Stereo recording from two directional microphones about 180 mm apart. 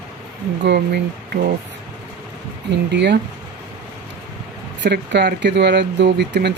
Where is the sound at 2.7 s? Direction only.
70° right (ahead or behind).